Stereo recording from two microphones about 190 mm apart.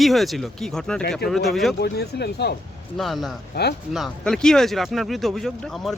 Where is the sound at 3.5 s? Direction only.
60° left (ahead or behind).